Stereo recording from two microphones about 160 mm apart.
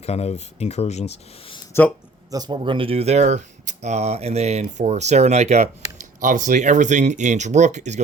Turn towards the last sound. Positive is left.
turn(degrees=-45)  # may be behind; listen again after turning